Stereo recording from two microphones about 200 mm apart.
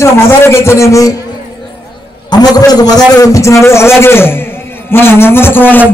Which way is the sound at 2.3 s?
20° left (ahead or behind).